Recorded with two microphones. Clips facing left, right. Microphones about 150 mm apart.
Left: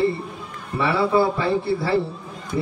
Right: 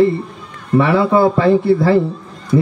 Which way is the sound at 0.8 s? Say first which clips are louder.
Right 6 dB; 50° right (ahead or behind).